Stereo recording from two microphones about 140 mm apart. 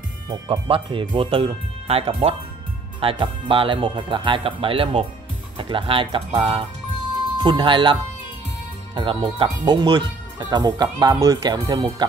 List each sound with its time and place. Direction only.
0.3 s speech: 40° right (ahead or behind)